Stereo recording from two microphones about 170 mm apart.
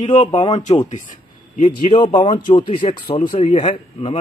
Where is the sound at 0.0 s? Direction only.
30° left (ahead or behind).